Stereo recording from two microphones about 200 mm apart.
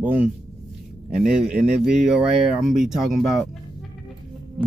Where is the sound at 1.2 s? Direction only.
5° right (ahead or behind).